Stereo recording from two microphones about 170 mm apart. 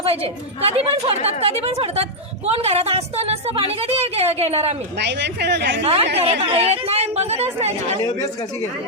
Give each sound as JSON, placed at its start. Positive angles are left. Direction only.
{"t": 0.0, "sound": "a woman's voice", "side_deg": -35}
{"t": 4.9, "sound": "speech", "side_deg": -90}
{"t": 5.8, "sound": "a woman's voice", "side_deg": -35}